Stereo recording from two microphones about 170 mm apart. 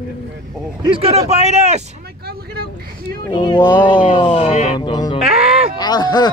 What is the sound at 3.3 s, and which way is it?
Speech, 25° left (ahead or behind).